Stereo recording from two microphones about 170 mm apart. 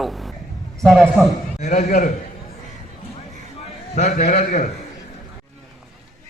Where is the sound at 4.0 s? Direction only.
45° left (ahead or behind).